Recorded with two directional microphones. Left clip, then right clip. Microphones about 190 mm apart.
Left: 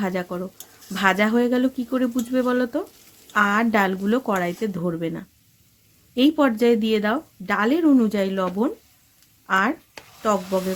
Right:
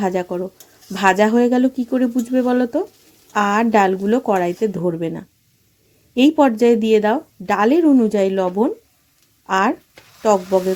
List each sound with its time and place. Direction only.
0.0 s speech: 15° right (ahead or behind)